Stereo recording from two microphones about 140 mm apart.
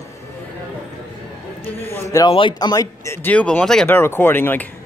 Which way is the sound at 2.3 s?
35° left (ahead or behind).